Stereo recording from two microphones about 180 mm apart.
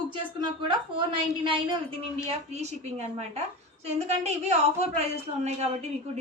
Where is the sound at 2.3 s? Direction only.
40° right (ahead or behind).